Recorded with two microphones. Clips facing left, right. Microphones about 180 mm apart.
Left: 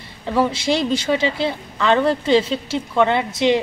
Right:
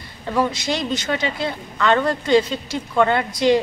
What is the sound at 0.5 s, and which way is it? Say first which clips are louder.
A woman's voice: left 4 dB; 30° left (ahead or behind).